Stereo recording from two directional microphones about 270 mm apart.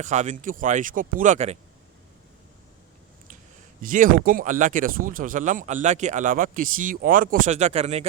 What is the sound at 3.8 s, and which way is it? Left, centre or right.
Speech, right.